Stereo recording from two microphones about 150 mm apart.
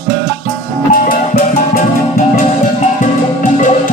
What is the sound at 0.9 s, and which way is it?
Music, 75° left (ahead or behind).